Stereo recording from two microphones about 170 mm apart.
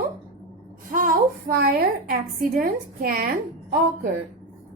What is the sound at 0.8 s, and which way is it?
A woman's voice, 55° right (ahead or behind).